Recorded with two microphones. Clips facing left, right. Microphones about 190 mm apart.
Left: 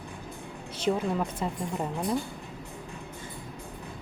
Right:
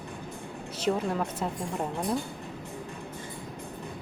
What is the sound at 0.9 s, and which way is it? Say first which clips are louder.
Speech: left 1 dB; centre (ahead or behind).